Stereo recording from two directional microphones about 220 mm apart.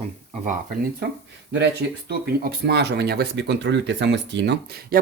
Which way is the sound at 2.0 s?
45° right (ahead or behind).